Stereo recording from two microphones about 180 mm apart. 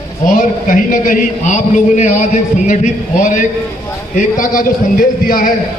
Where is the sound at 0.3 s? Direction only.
50° left (ahead or behind).